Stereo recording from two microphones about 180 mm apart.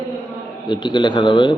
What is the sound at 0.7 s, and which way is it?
Speech, 25° left (ahead or behind).